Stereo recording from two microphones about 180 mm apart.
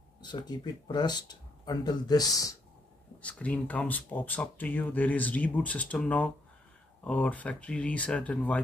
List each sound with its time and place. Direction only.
0.2 s speech: 25° left (ahead or behind)
3.2 s speech: 5° left (ahead or behind)